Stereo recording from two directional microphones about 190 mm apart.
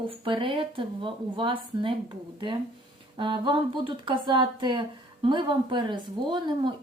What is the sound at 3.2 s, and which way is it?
Speech, 25° right (ahead or behind).